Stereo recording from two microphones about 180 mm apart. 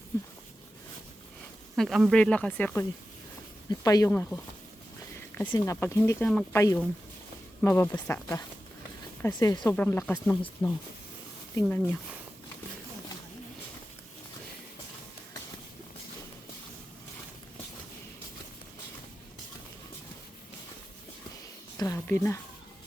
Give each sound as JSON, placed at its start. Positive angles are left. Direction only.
{"t": 1.7, "sound": "speech", "side_deg": 0}
{"t": 3.7, "sound": "speech", "side_deg": 20}
{"t": 5.5, "sound": "speech", "side_deg": 15}
{"t": 21.9, "sound": "speech", "side_deg": 15}